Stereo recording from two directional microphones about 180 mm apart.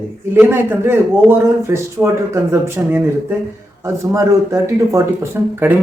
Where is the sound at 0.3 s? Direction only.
10° right (ahead or behind).